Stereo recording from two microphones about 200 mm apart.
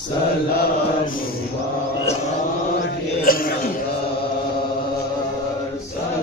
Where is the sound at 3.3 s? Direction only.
45° left (ahead or behind).